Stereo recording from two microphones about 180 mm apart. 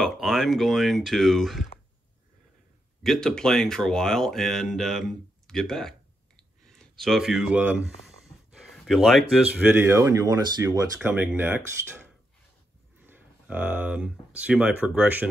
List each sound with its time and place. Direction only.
0.0 s speech: centre (ahead or behind)
3.0 s speech: centre (ahead or behind)
9.7 s speech: 15° right (ahead or behind)
11.0 s speech: 10° right (ahead or behind)
13.0 s speech: 10° right (ahead or behind)